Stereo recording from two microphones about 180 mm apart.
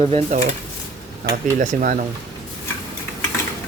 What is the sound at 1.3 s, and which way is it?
Speech, 45° right (ahead or behind).